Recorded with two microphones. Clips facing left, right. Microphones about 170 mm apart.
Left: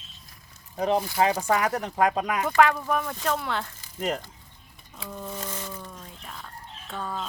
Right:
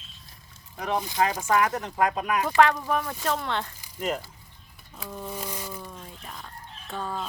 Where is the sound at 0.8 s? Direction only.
30° left (ahead or behind).